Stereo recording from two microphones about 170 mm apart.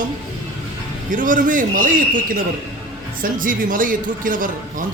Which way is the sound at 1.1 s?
50° right (ahead or behind).